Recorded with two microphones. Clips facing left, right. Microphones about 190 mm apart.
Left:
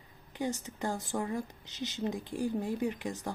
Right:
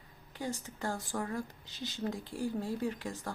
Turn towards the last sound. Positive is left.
turn(degrees=20)  # may be behind; listen again after turning